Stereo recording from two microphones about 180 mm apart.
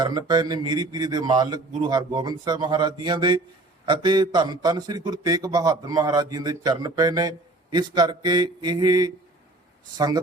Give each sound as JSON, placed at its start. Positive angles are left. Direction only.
{"t": 0.0, "sound": "a man's voice", "side_deg": -20}